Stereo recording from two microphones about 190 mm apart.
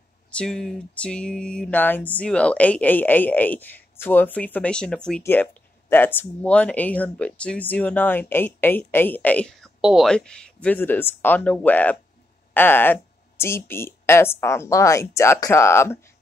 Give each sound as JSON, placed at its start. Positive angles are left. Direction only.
{"t": 0.3, "sound": "speech", "side_deg": 5}